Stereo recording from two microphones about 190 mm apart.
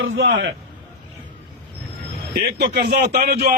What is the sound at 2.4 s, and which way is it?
Speech, 60° right (ahead or behind).